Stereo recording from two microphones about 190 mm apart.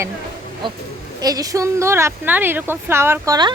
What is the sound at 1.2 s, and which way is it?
A woman's voice, 20° right (ahead or behind).